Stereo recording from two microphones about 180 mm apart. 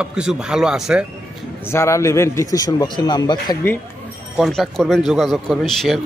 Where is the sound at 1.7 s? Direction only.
15° left (ahead or behind).